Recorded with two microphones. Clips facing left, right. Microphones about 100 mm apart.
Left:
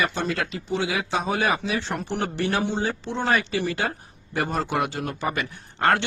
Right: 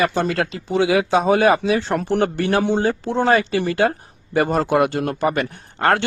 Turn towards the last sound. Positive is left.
turn(degrees=-55)  # may be behind; listen again after turning